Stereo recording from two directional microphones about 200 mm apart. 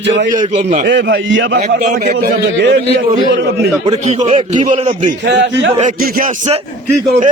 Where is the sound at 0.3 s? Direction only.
40° right (ahead or behind).